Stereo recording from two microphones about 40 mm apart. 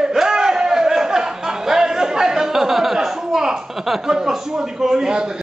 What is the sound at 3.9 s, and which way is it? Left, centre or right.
Speech, centre.